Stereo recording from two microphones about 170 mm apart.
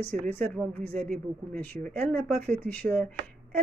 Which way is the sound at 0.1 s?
10° left (ahead or behind).